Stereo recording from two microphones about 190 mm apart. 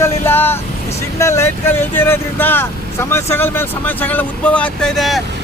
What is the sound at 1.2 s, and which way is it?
Speech, 15° left (ahead or behind).